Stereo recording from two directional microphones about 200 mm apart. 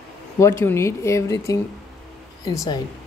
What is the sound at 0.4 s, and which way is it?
Speech, 15° left (ahead or behind).